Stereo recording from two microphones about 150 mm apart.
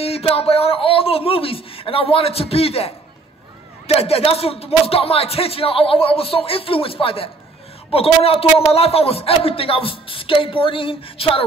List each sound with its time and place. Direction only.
0.0 s a man's voice: 40° left (ahead or behind)